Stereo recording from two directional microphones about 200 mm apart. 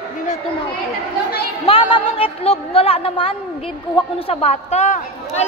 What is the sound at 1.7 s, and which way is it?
A woman's voice, 25° left (ahead or behind).